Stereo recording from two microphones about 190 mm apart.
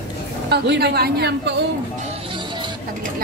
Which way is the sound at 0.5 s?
60° right (ahead or behind).